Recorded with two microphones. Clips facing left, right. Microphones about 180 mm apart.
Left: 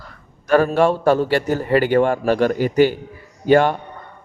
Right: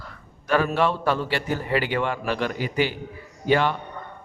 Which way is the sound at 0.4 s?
45° left (ahead or behind).